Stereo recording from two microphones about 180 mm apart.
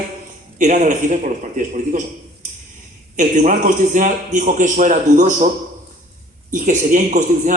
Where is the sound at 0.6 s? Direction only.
45° right (ahead or behind).